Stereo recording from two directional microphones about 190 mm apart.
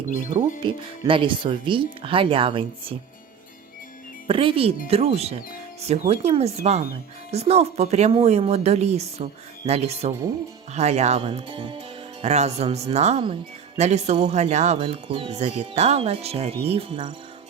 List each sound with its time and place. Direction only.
0.1 s speech: 40° right (ahead or behind)
0.6 s speech: 30° right (ahead or behind)
4.3 s speech: 30° right (ahead or behind)